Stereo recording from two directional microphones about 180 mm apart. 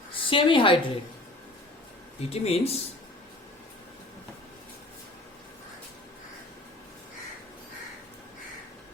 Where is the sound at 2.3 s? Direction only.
35° left (ahead or behind).